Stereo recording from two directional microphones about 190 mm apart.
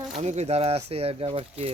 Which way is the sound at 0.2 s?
35° right (ahead or behind).